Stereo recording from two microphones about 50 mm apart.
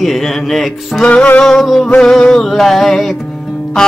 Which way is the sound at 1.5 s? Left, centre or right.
Centre.